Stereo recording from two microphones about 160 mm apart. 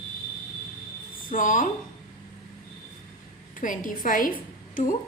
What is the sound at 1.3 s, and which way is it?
Speech, 55° left (ahead or behind).